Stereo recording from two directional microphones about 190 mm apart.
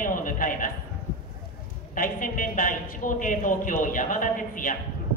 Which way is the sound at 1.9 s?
45° left (ahead or behind).